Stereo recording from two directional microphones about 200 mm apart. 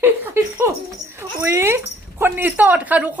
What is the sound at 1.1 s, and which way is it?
A woman's voice, 15° right (ahead or behind).